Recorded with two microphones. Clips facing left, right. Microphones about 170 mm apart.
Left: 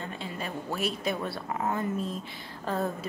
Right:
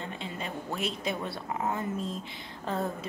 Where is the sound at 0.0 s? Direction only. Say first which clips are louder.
Left 1 dB; 20° right (ahead or behind).